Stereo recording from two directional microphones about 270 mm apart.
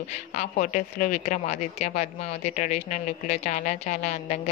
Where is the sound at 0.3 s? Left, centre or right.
Left.